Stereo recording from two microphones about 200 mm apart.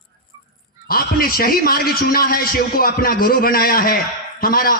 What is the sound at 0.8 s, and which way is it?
A man's voice, 45° left (ahead or behind).